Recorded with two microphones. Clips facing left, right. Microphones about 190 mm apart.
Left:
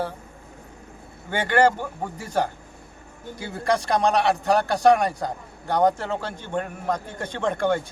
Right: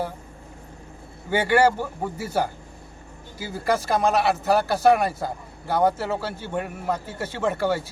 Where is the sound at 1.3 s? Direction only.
10° right (ahead or behind).